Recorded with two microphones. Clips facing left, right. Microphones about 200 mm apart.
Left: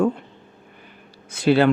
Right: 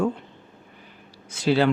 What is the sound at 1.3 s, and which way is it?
Speech, 60° left (ahead or behind).